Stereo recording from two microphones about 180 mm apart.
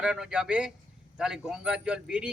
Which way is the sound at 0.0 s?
5° right (ahead or behind).